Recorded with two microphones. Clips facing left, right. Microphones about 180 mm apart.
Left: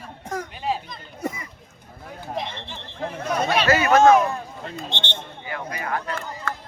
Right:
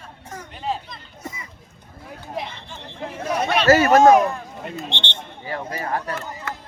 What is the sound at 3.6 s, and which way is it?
Speech, 40° right (ahead or behind).